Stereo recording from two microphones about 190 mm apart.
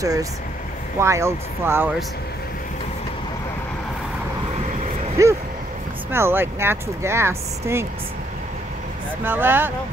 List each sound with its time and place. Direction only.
0.0 s speech: 15° right (ahead or behind)
5.2 s speech: 15° right (ahead or behind)
9.2 s speech: 10° right (ahead or behind)